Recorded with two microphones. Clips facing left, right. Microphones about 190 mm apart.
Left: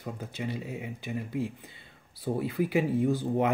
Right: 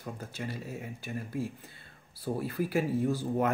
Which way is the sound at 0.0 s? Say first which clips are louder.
Left 3 dB; 15° left (ahead or behind).